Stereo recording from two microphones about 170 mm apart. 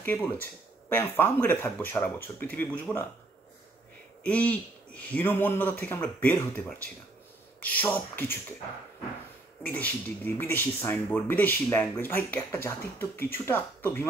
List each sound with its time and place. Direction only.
0.0 s speech: 10° left (ahead or behind)
4.2 s speech: 10° left (ahead or behind)
9.6 s speech: 10° left (ahead or behind)